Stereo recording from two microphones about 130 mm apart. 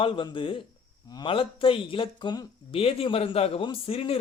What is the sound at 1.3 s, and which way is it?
A man's voice, 45° left (ahead or behind).